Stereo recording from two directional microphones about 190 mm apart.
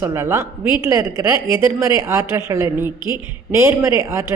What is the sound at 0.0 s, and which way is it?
A woman's voice, 15° right (ahead or behind).